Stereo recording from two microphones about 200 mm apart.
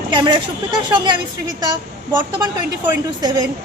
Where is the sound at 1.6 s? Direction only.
20° right (ahead or behind).